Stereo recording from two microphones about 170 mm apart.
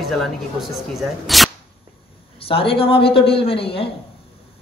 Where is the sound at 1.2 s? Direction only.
Centre (ahead or behind).